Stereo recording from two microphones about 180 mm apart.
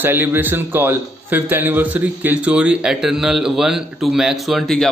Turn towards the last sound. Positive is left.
turn(degrees=0)  # may be behind; listen again after turning